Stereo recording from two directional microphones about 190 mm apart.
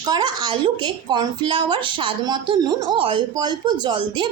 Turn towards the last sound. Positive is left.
turn(degrees=-25)  # may be behind; listen again after turning